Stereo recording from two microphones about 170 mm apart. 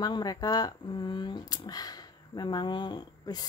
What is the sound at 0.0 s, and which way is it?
Speech, 25° left (ahead or behind).